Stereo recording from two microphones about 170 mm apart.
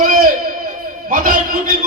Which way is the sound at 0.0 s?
55° right (ahead or behind).